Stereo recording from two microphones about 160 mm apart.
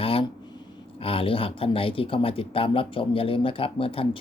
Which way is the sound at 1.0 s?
35° left (ahead or behind).